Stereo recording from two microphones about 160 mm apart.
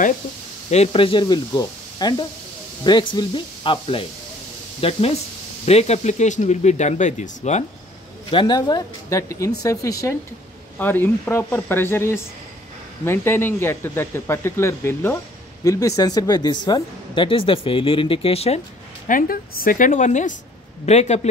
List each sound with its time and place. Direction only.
0.7 s speech: 40° left (ahead or behind)
8.3 s speech: 30° left (ahead or behind)
19.0 s a woman's voice: 60° left (ahead or behind); by 21.3 s 45° left (ahead or behind)